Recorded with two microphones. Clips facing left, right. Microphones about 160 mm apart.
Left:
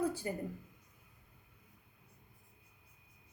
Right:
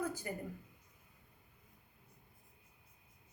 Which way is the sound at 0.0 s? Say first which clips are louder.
Left 4 dB; 30° left (ahead or behind).